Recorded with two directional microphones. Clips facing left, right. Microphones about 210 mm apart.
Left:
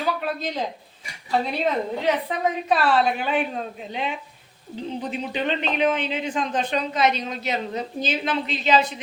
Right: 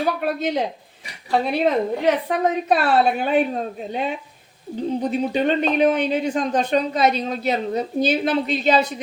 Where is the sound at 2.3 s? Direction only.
55° right (ahead or behind).